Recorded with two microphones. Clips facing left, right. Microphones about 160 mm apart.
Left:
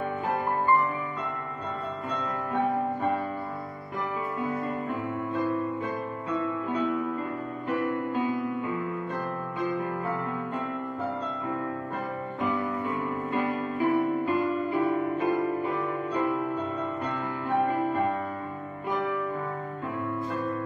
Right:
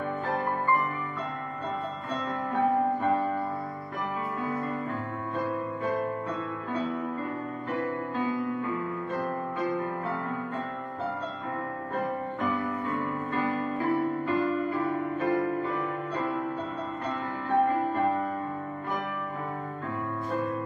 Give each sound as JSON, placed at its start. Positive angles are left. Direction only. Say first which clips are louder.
{"t": 13.3, "sound": "music", "louder": "even", "side_deg": 15}